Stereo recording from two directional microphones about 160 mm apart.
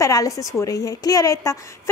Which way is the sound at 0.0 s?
20° left (ahead or behind).